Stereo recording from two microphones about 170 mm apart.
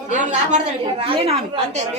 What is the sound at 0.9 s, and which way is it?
A woman's voice, 35° right (ahead or behind).